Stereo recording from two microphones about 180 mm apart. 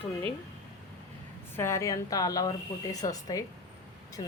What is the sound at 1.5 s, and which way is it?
A woman's voice, 15° left (ahead or behind).